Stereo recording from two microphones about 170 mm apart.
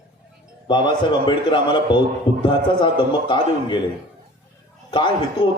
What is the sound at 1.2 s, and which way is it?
Speech, 25° left (ahead or behind).